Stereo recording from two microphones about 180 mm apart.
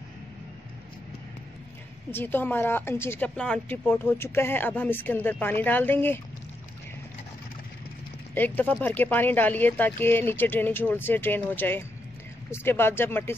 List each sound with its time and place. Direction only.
2.0 s speech: 10° left (ahead or behind)
8.4 s speech: 10° left (ahead or behind)